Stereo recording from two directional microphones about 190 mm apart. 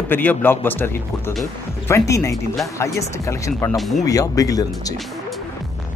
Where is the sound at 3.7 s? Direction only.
Centre (ahead or behind).